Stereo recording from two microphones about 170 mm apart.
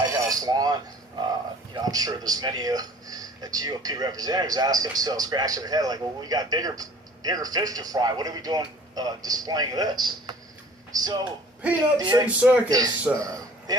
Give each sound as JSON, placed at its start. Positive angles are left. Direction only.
{"t": 0.0, "sound": "a sound", "side_deg": -20}
{"t": 1.7, "sound": "a man's voice", "side_deg": -20}
{"t": 12.2, "sound": "a man's voice", "side_deg": -10}
{"t": 12.6, "sound": "a man's voice", "side_deg": -20}